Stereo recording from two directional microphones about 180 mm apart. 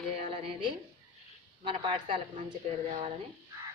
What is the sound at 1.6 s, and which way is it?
Speech, 30° right (ahead or behind).